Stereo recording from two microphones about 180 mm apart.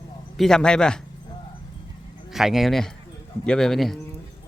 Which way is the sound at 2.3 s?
Centre (ahead or behind).